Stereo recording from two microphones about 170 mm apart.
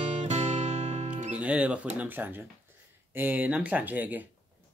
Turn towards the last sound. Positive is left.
turn(degrees=-10)  # may be behind; listen again after turning